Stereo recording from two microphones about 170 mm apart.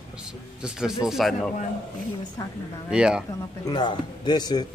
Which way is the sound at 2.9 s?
5° right (ahead or behind).